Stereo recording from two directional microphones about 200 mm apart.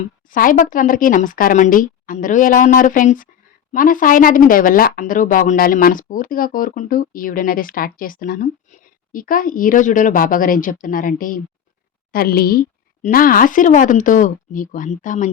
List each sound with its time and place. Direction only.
0.0 s speech: 45° left (ahead or behind)